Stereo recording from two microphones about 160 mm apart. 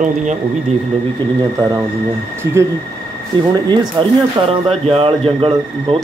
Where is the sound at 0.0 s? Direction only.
50° right (ahead or behind).